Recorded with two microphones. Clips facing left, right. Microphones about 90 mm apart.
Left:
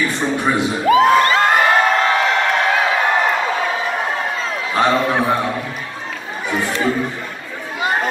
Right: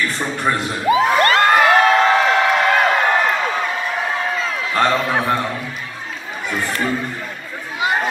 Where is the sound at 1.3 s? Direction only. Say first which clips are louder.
Right 1 dB; centre (ahead or behind).